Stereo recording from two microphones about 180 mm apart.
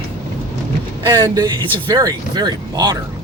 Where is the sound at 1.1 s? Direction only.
20° right (ahead or behind).